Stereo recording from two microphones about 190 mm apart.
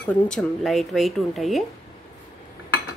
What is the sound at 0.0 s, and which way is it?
Speech, 5° left (ahead or behind).